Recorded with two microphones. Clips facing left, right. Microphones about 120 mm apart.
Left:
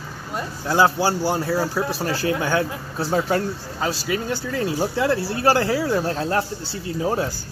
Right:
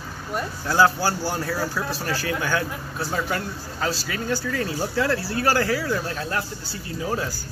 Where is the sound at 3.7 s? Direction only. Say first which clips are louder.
Left 2 dB; 15° left (ahead or behind).